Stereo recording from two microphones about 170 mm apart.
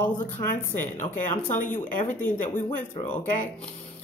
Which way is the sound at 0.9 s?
50° left (ahead or behind).